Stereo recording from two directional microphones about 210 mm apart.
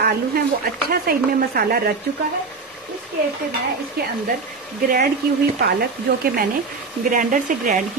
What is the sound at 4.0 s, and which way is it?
Speech, 45° right (ahead or behind).